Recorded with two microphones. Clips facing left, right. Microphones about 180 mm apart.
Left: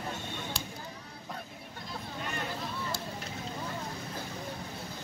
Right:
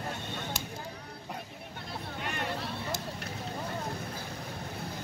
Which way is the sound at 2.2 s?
65° right (ahead or behind).